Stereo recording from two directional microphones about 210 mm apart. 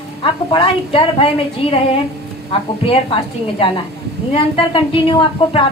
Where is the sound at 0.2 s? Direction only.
25° left (ahead or behind).